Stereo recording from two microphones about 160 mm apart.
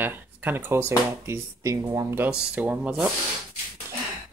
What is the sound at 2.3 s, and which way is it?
Speech, 5° right (ahead or behind).